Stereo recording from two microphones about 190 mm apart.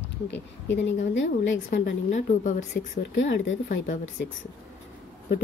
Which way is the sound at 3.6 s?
45° left (ahead or behind).